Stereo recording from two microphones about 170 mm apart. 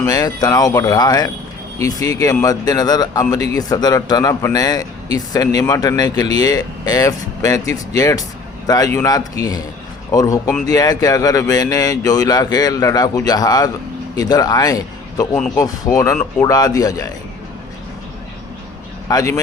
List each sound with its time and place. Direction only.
0.0 s a man's voice: 20° left (ahead or behind)
19.0 s speech: 20° left (ahead or behind)